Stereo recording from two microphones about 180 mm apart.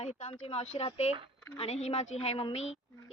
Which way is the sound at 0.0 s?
40° left (ahead or behind).